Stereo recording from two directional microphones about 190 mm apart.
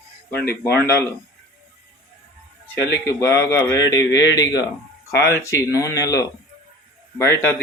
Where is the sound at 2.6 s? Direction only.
15° left (ahead or behind).